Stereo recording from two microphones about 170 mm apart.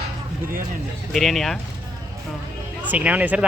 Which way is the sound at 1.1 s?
Centre (ahead or behind).